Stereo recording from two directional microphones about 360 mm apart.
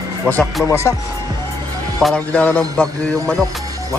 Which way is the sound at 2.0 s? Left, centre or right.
Centre.